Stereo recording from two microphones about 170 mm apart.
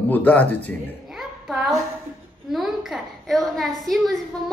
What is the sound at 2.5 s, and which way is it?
A woman's voice, centre (ahead or behind).